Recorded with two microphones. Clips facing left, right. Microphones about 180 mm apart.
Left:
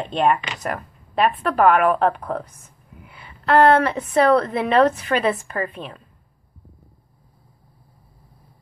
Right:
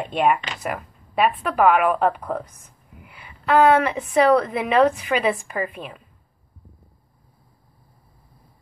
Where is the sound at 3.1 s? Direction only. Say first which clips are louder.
Left 1 dB; 10° right (ahead or behind).